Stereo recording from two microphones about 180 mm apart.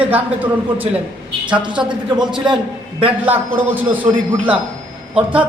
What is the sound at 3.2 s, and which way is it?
Speech, 10° right (ahead or behind).